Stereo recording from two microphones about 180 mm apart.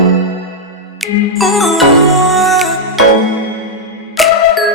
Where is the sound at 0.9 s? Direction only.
Centre (ahead or behind).